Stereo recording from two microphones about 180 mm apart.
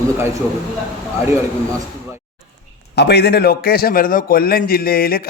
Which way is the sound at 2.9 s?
65° left (ahead or behind).